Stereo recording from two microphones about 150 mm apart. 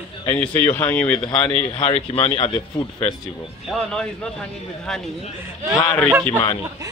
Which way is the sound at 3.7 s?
Centre (ahead or behind).